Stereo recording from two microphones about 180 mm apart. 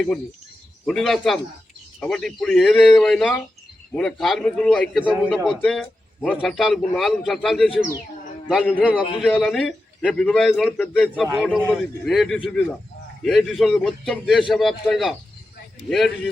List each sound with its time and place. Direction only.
0.9 s a man's voice: centre (ahead or behind)
8.8 s a man's voice: 5° right (ahead or behind); by 11.0 s 10° left (ahead or behind)
11.0 s a man's voice: 5° right (ahead or behind)